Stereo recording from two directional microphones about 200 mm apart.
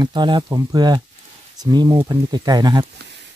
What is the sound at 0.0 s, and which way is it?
Speech, 20° right (ahead or behind).